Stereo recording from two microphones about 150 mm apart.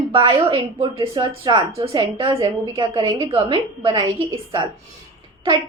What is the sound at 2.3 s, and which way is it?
Speech, 20° right (ahead or behind).